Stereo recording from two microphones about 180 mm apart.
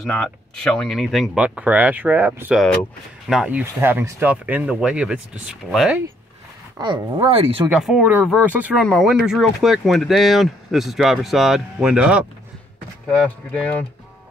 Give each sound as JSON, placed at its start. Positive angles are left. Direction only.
{"t": 0.0, "sound": "speech", "side_deg": 5}
{"t": 6.8, "sound": "speech", "side_deg": -25}
{"t": 7.6, "sound": "speech", "side_deg": -5}
{"t": 13.1, "sound": "speech", "side_deg": 5}